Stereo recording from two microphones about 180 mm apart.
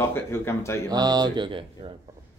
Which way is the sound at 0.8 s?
20° right (ahead or behind).